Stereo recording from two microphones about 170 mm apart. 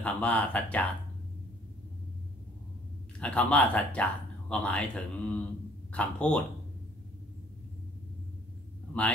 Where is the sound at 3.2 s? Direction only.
5° left (ahead or behind).